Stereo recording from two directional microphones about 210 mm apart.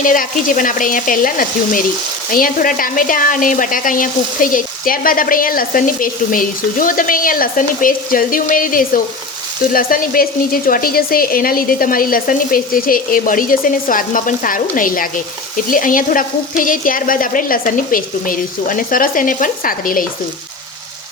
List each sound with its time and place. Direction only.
0.0 s speech: 40° left (ahead or behind)